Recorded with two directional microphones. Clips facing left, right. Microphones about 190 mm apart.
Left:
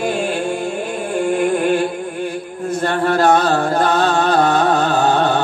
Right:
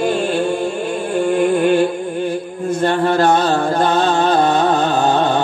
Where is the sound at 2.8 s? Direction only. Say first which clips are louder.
Right 1 dB; 30° right (ahead or behind).